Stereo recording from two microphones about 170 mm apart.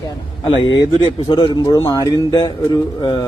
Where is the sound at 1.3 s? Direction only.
25° left (ahead or behind).